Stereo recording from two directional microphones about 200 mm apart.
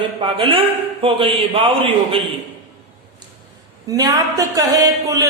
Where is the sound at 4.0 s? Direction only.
20° right (ahead or behind).